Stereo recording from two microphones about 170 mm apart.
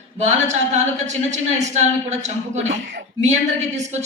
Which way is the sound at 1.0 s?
40° right (ahead or behind).